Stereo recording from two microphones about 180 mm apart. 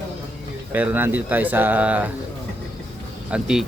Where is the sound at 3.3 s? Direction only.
5° right (ahead or behind).